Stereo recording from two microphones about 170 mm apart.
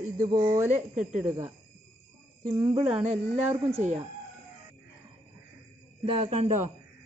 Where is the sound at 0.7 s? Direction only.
45° right (ahead or behind).